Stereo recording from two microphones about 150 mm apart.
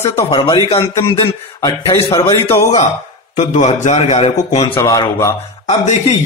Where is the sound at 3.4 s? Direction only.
50° left (ahead or behind).